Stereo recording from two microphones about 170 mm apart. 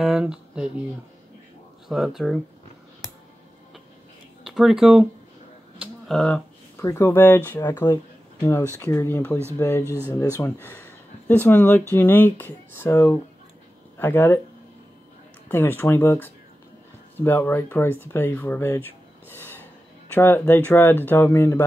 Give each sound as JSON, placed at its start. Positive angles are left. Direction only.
{"t": 0.0, "sound": "speech", "side_deg": -5}
{"t": 1.9, "sound": "speech", "side_deg": 0}
{"t": 4.5, "sound": "speech", "side_deg": 0}
{"t": 6.0, "sound": "speech", "side_deg": 5}
{"t": 6.8, "sound": "speech", "side_deg": 15}
{"t": 9.8, "sound": "speech", "side_deg": -10}
{"t": 10.1, "sound": "speech", "side_deg": 15}
{"t": 15.4, "sound": "speech", "side_deg": 10}